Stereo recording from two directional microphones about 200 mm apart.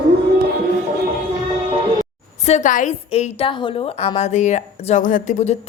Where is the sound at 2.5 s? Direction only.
35° left (ahead or behind).